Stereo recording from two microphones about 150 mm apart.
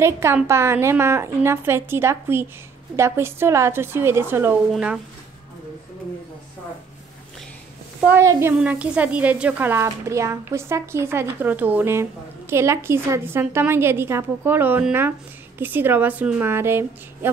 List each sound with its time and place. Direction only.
0.0 s a woman's voice: 15° right (ahead or behind)
8.0 s a woman's voice: 15° right (ahead or behind)